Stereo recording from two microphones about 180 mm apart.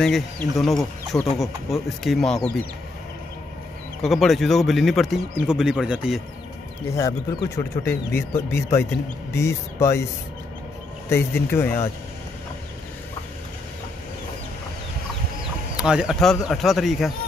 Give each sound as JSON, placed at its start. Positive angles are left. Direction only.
{"t": 0.0, "sound": "speech", "side_deg": 5}
{"t": 4.0, "sound": "speech", "side_deg": 0}
{"t": 6.9, "sound": "speech", "side_deg": 20}
{"t": 11.1, "sound": "speech", "side_deg": 15}
{"t": 15.7, "sound": "speech", "side_deg": -5}